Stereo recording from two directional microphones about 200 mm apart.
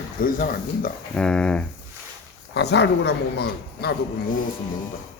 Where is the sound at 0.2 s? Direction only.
45° left (ahead or behind).